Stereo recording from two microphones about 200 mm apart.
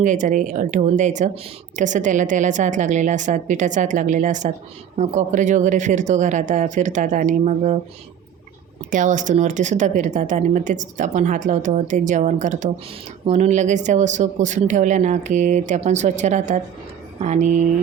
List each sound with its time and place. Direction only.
0.0 s speech: 40° right (ahead or behind)
8.9 s speech: 40° right (ahead or behind)